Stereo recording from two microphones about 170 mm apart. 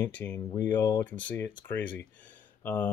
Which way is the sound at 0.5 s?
20° left (ahead or behind).